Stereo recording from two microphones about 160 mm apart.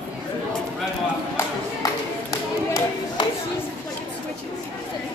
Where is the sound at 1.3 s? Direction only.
20° left (ahead or behind).